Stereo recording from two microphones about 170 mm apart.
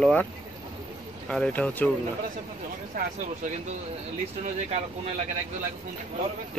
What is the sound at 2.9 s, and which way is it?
Speech, 55° right (ahead or behind).